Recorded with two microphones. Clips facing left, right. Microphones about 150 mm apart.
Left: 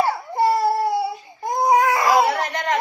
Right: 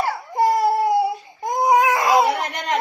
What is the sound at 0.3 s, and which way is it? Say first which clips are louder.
Baby cry: right 1 dB; 20° right (ahead or behind).